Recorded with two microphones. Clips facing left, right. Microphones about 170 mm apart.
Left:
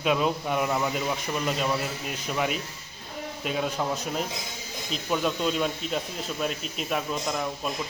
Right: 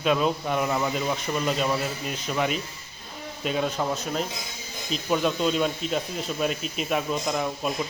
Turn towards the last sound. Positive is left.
turn(degrees=-5)  # may be behind; listen again after turning